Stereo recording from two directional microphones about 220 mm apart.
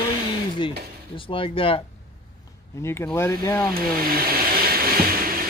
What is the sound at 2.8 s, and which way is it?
Speech, 10° left (ahead or behind).